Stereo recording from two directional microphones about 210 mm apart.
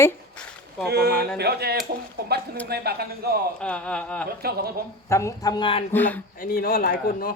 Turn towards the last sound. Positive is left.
turn(degrees=45)  # may be behind; listen again after turning